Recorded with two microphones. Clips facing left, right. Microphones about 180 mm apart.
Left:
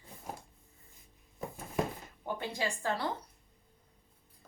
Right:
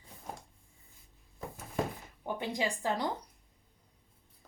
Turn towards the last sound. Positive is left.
turn(degrees=-15)  # may be behind; listen again after turning